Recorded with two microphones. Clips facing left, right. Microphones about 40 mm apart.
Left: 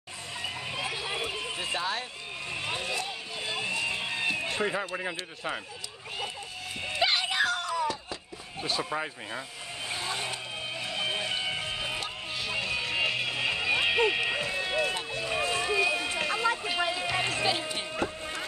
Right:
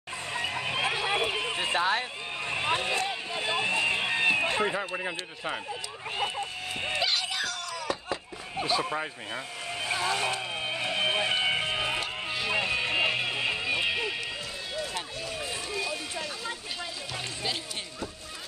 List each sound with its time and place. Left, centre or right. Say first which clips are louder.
0.3 s a sound: right 5 dB; right
2.5 s vehicle: right 5 dB; right
3.3 s a sound: right 4 dB; right
4.6 s speech: right 1 dB; centre
7.0 s music: left 5 dB; centre
7.9 s a sound: right 4 dB; right
8.6 s speech: right 2 dB; centre
9.8 s vehicle: right 5 dB; right
10.7 s music: right 4 dB; right
12.0 s a sound: right 3 dB; centre
12.5 s music: right 2 dB; right; by 13.7 s centre
13.7 s music: left 6 dB; centre
14.0 s music: left 6 dB; left
14.9 s run: left 4 dB; left